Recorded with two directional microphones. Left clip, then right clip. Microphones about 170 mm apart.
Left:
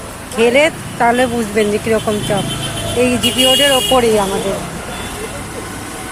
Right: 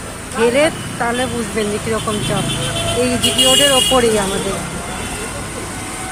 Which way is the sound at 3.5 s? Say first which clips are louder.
Left 1 dB; 25° left (ahead or behind).